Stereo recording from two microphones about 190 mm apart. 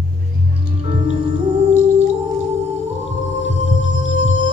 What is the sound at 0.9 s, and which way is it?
Music, 40° right (ahead or behind).